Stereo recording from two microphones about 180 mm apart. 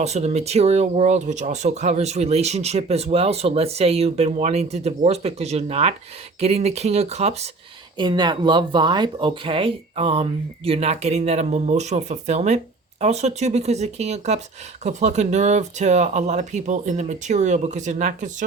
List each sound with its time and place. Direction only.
0.0 s speech: 35° right (ahead or behind)
7.9 s speech: 25° right (ahead or behind); by 18.4 s 45° right (ahead or behind)